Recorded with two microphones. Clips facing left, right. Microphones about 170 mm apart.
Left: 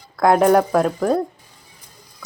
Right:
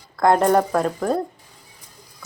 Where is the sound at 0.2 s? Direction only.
5° left (ahead or behind).